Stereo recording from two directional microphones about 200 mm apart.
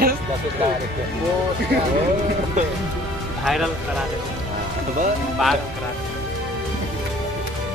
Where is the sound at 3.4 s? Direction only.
Centre (ahead or behind).